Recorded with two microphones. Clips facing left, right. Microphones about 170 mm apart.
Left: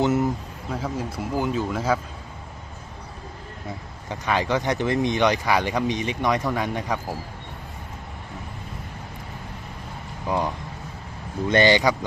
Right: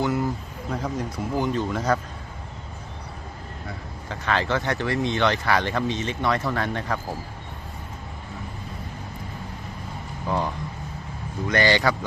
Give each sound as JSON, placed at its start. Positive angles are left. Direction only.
{"t": 0.7, "sound": "speech", "side_deg": 5}
{"t": 4.1, "sound": "speech", "side_deg": 15}
{"t": 10.2, "sound": "speech", "side_deg": 15}